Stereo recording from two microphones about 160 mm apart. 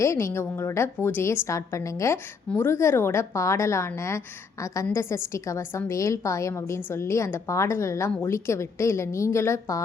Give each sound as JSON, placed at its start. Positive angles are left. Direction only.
{"t": 0.0, "sound": "a woman's voice", "side_deg": 15}